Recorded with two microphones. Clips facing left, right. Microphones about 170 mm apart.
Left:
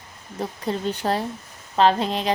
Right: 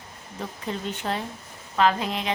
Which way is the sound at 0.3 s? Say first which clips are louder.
Left 5 dB; 35° left (ahead or behind).